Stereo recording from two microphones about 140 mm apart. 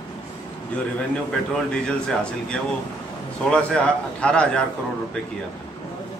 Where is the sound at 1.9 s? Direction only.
5° left (ahead or behind).